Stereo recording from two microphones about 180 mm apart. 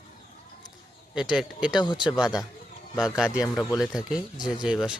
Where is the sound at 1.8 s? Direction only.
25° left (ahead or behind).